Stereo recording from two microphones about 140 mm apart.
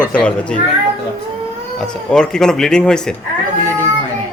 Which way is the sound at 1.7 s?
5° left (ahead or behind).